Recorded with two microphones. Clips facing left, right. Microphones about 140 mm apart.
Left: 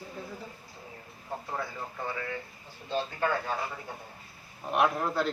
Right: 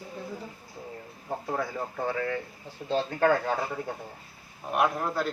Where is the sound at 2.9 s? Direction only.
75° right (ahead or behind).